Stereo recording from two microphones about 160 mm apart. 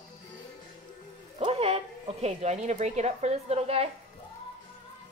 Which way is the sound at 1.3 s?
35° right (ahead or behind).